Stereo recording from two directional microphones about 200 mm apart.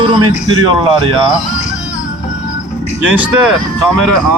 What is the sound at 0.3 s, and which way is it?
Speech, 25° right (ahead or behind).